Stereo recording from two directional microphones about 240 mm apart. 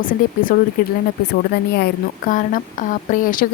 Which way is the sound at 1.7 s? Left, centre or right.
Left.